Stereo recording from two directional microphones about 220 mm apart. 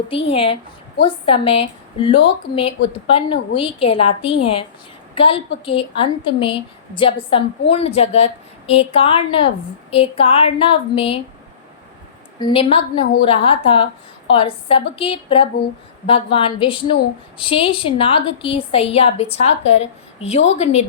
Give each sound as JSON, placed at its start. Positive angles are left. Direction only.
{"t": 0.3, "sound": "a woman's voice", "side_deg": 25}
{"t": 12.4, "sound": "a woman's voice", "side_deg": 20}